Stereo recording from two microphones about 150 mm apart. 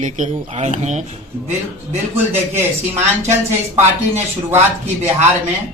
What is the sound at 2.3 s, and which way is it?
Speech, 15° right (ahead or behind).